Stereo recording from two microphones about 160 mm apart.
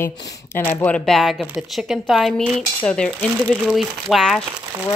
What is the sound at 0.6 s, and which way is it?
Speech, 10° left (ahead or behind).